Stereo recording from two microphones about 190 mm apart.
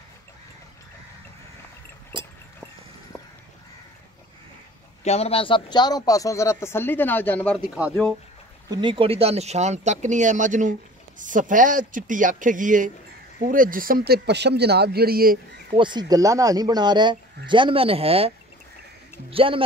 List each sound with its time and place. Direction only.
2.1 s a sound: 25° right (ahead or behind)
5.0 s a man's voice: 35° left (ahead or behind); by 7.6 s 5° left (ahead or behind)
8.6 s speech: 25° right (ahead or behind); by 15.3 s 50° right (ahead or behind)
15.7 s speech: 25° right (ahead or behind)
19.3 s speech: 30° right (ahead or behind)